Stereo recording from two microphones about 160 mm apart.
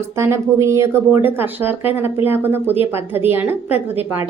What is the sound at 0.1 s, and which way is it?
A woman's voice, 15° right (ahead or behind).